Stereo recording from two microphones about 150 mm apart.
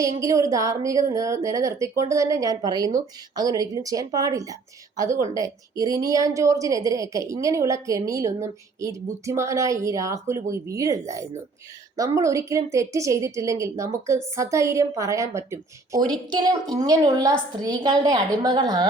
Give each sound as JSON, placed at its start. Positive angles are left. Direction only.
{"t": 0.0, "sound": "a woman's voice", "side_deg": -20}